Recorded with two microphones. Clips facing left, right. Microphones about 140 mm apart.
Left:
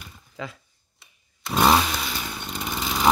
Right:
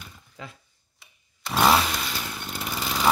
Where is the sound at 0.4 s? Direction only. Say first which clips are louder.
Left 6 dB; 90° left.